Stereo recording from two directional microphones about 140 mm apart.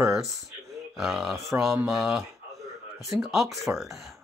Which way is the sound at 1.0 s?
Centre (ahead or behind).